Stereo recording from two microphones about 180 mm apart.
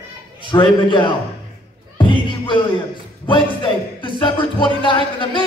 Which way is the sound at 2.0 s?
25° left (ahead or behind).